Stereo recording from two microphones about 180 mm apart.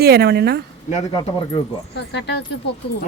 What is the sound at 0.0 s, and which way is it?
Speech, 65° right (ahead or behind).